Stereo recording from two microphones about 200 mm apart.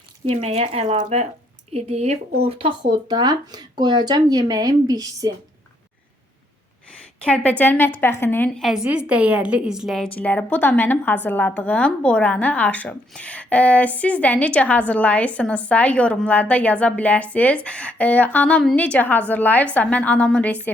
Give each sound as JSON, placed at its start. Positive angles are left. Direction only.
{"t": 0.3, "sound": "speech", "side_deg": -30}
{"t": 7.2, "sound": "a woman's voice", "side_deg": 5}